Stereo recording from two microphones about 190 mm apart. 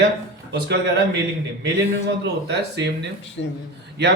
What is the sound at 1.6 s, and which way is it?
A man's voice, 65° right (ahead or behind).